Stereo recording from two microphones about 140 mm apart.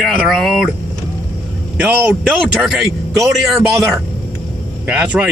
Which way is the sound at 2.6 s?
Centre (ahead or behind).